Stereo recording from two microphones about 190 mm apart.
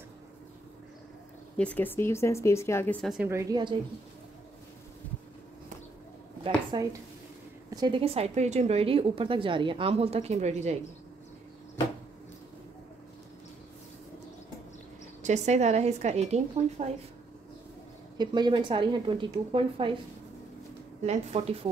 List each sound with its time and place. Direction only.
1.6 s speech: 10° left (ahead or behind)
3.3 s a woman's voice: 15° right (ahead or behind)
6.4 s a woman's voice: 20° right (ahead or behind); by 10.8 s 35° right (ahead or behind)
15.2 s a woman's voice: 35° right (ahead or behind)
18.1 s a woman's voice: 20° right (ahead or behind)
21.0 s a woman's voice: 35° right (ahead or behind)